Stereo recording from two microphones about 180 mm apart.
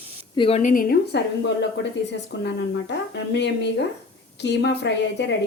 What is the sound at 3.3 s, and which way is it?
A woman's voice, 70° left (ahead or behind).